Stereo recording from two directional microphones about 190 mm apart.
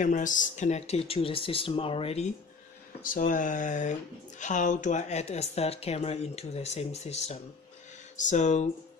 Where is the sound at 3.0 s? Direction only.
45° left (ahead or behind).